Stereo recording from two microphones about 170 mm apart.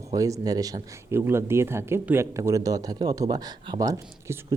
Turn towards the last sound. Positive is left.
turn(degrees=-20)  # may be behind; listen again after turning